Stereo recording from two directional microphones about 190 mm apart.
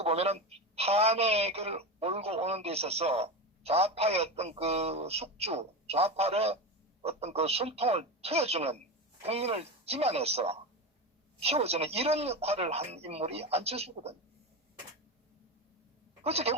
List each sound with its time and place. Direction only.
0.0 s speech: 35° right (ahead or behind)
16.2 s speech: 35° right (ahead or behind)